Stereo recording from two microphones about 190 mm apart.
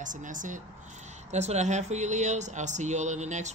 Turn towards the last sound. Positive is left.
turn(degrees=-40)  # may be behind; listen again after turning